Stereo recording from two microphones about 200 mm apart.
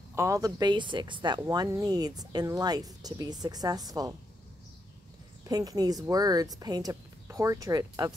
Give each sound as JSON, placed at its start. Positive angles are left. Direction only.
{"t": 0.1, "sound": "speech", "side_deg": -15}
{"t": 5.4, "sound": "speech", "side_deg": -20}